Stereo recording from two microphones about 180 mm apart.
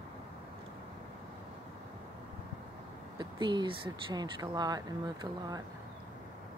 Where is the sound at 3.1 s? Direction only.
25° right (ahead or behind).